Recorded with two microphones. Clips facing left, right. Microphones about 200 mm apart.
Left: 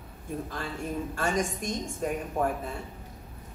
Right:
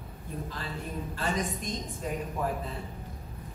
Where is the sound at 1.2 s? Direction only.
45° left (ahead or behind).